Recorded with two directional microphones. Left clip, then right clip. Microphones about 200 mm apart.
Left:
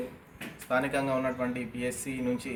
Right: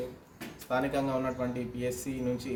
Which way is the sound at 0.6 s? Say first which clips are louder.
Left 2 dB; 5° right (ahead or behind).